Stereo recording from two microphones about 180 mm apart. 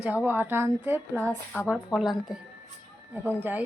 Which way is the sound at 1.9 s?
Centre (ahead or behind).